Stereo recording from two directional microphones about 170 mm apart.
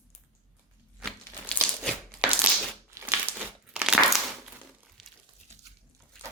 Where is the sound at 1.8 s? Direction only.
5° right (ahead or behind).